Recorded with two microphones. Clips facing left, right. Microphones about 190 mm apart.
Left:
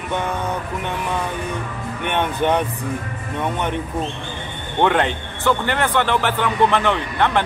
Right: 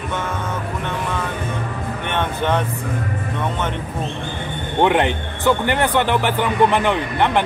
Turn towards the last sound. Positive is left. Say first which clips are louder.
# right 1 dB
turn(degrees=-15)  # may be behind; listen again after turning